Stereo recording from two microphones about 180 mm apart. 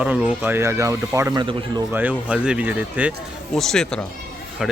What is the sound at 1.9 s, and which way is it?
Speech, 10° right (ahead or behind).